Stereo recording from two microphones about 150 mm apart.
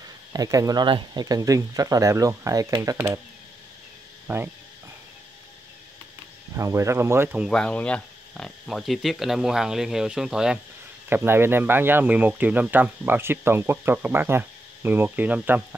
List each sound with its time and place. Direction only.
0.3 s speech: 25° right (ahead or behind)
6.5 s speech: 20° right (ahead or behind)
7.4 s speech: 5° left (ahead or behind)
11.1 s speech: 15° right (ahead or behind)